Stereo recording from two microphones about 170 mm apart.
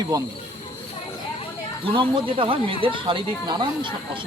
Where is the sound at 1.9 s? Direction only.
30° right (ahead or behind).